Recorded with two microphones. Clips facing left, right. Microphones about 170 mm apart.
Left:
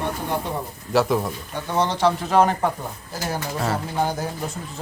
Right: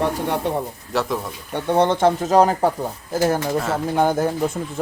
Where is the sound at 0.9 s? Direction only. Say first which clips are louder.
Left 3 dB; centre (ahead or behind).